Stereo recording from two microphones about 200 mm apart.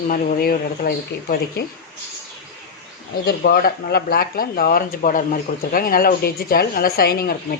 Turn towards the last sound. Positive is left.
turn(degrees=50)  # may be behind; listen again after turning